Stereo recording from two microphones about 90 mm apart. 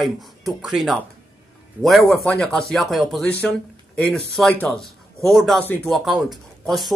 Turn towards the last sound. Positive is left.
turn(degrees=0)  # may be behind; listen again after turning